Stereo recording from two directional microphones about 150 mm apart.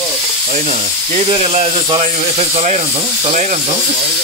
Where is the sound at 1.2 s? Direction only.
40° right (ahead or behind).